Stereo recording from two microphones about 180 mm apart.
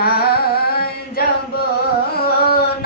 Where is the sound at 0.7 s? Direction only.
60° left (ahead or behind).